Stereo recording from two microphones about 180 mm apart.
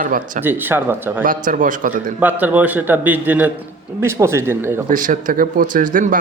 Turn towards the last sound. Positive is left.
turn(degrees=-45)  # may be behind; listen again after turning